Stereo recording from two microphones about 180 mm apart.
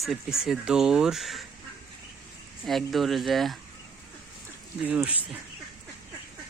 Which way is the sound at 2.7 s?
Centre (ahead or behind).